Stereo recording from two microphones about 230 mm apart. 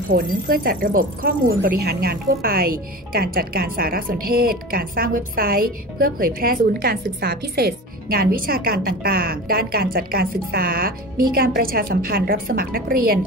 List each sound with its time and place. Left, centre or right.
0.1 s speech: right